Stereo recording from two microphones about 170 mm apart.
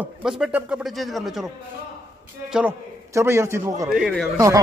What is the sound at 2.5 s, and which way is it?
Speech, 5° right (ahead or behind).